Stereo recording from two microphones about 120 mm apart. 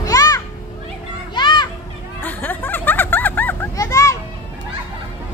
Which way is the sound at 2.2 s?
15° left (ahead or behind).